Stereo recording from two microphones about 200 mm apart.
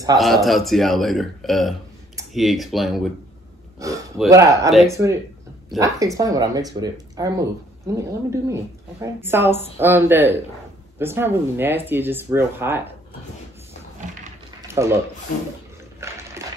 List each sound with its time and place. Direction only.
0.2 s a man's voice: centre (ahead or behind)
3.8 s speech: 15° right (ahead or behind)
14.8 s speech: 10° right (ahead or behind)